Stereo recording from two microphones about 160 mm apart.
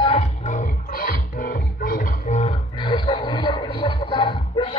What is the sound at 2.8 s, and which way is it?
Music, 30° left (ahead or behind).